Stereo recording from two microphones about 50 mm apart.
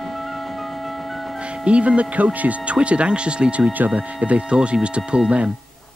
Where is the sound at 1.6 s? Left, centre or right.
Right.